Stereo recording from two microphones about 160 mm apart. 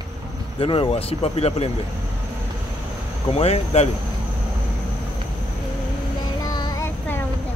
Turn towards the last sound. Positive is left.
turn(degrees=20)  # may be behind; listen again after turning